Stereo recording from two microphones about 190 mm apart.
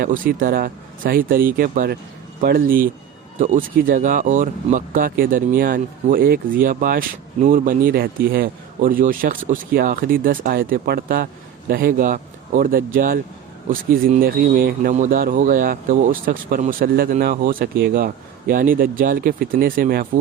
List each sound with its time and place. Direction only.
0.0 s speech: 50° right (ahead or behind)